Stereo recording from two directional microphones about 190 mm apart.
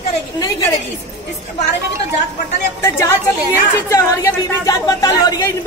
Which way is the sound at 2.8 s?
15° left (ahead or behind).